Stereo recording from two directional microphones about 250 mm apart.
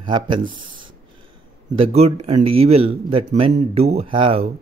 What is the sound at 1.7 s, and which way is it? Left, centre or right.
Speech, right.